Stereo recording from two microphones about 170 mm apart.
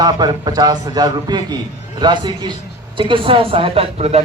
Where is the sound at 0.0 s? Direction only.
20° right (ahead or behind).